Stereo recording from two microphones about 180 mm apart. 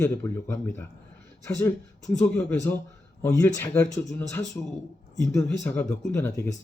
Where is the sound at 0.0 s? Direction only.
10° left (ahead or behind).